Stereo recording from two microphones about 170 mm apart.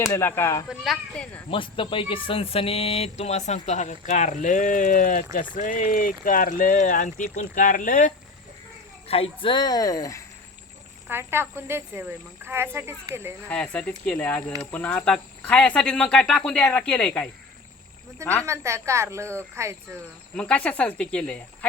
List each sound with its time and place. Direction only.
0.0 s speech: 15° left (ahead or behind)
0.7 s speech: 5° left (ahead or behind)
1.5 s speech: 30° left (ahead or behind); by 8.1 s 50° left (ahead or behind)
9.0 s speech: 35° left (ahead or behind); by 10.2 s 20° left (ahead or behind)
11.1 s speech: 15° right (ahead or behind)
13.5 s speech: 10° left (ahead or behind)
18.4 s speech: 15° right (ahead or behind)
20.3 s speech: 5° left (ahead or behind)